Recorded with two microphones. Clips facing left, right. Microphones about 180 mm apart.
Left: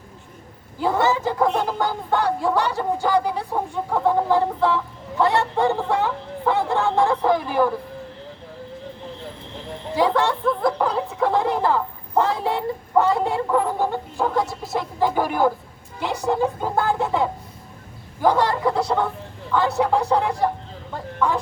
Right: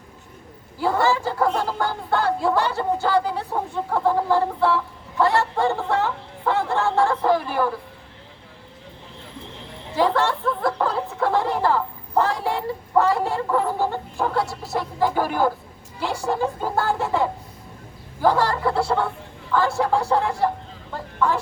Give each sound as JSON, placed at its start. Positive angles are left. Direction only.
{"t": 0.8, "sound": "speech", "side_deg": 20}
{"t": 10.0, "sound": "speech", "side_deg": 15}